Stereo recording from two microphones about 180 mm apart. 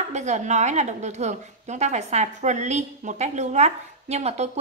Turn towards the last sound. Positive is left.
turn(degrees=-40)  # may be behind; listen again after turning